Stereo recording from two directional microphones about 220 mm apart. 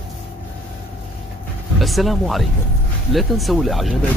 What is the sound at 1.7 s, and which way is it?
Speech, centre (ahead or behind).